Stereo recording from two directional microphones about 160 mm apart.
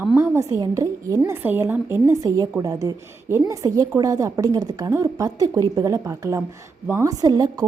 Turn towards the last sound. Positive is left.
turn(degrees=-25)  # may be behind; listen again after turning